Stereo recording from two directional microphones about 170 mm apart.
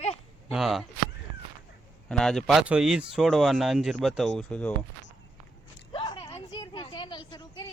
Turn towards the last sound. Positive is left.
turn(degrees=25)  # may be behind; listen again after turning